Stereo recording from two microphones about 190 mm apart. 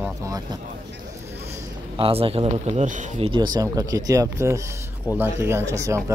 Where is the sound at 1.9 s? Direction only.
30° right (ahead or behind).